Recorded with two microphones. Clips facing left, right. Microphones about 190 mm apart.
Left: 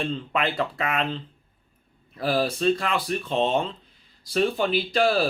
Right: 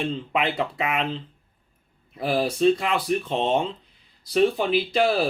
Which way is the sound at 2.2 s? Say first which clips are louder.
Right 2 dB; 20° right (ahead or behind).